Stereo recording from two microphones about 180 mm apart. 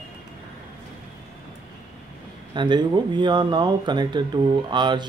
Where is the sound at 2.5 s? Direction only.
25° right (ahead or behind).